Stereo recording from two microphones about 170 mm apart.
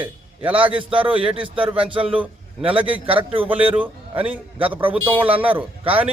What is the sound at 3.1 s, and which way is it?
Speech, 35° right (ahead or behind).